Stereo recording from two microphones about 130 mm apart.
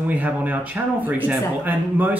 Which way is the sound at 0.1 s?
10° right (ahead or behind).